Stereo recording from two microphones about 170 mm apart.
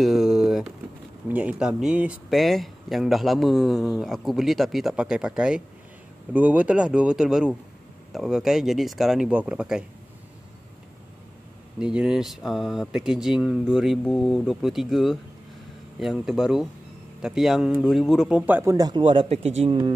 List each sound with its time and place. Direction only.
0.0 s a sound: centre (ahead or behind)
1.3 s speech: 5° right (ahead or behind)
11.8 s speech: 5° right (ahead or behind)
18.4 s speech: 15° right (ahead or behind); by 19.8 s 35° right (ahead or behind)